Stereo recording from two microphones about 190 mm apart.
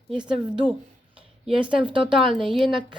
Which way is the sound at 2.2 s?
Centre (ahead or behind).